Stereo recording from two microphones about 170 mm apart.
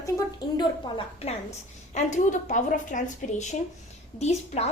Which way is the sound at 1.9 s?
45° left (ahead or behind).